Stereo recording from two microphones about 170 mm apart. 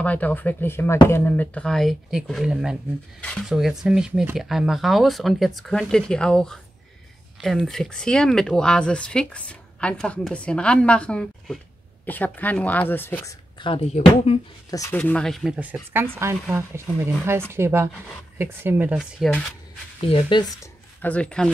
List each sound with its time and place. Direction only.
0.0 s speech: 10° left (ahead or behind)
13.7 s speech: 35° left (ahead or behind)
14.7 s speech: 15° left (ahead or behind); by 18.9 s 10° right (ahead or behind)
18.9 s speech: centre (ahead or behind)
20.0 s speech: 30° left (ahead or behind)
20.6 s speech: 10° left (ahead or behind)